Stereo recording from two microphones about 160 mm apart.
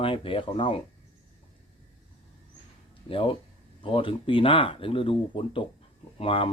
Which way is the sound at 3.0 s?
35° left (ahead or behind).